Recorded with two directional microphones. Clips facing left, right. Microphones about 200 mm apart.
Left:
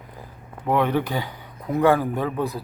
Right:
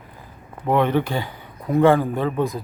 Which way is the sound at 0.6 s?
10° left (ahead or behind).